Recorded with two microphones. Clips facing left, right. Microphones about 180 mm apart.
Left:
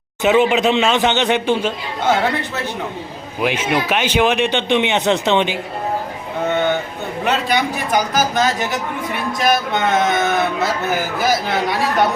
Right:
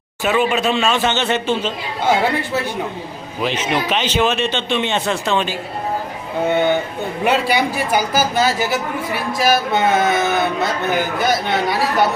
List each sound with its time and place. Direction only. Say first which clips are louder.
0.2 s speech: left 3 dB; 20° left (ahead or behind)
3.4 s speech: left 1 dB; 10° left (ahead or behind)
6.5 s a man's voice: right 2 dB; 10° right (ahead or behind)